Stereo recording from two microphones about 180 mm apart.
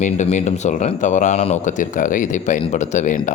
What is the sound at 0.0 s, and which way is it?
Speech, 40° left (ahead or behind).